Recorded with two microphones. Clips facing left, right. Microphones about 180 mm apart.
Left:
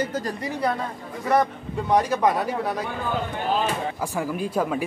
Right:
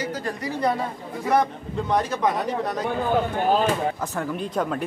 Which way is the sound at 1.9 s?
10° left (ahead or behind).